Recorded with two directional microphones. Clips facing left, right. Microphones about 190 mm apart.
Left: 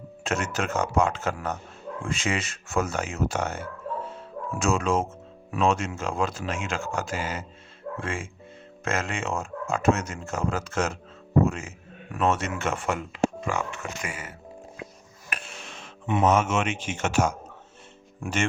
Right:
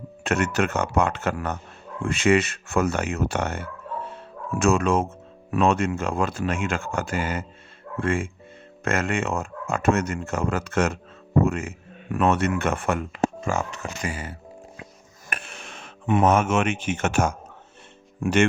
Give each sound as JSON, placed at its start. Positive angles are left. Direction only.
{"t": 0.3, "sound": "speech", "side_deg": -60}
{"t": 15.3, "sound": "speech", "side_deg": -55}